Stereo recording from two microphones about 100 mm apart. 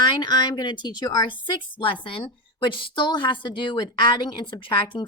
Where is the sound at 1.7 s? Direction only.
60° left (ahead or behind).